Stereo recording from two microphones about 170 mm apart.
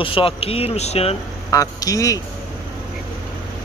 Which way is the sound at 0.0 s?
30° left (ahead or behind).